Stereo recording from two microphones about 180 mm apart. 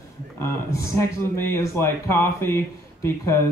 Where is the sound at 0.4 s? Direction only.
15° left (ahead or behind).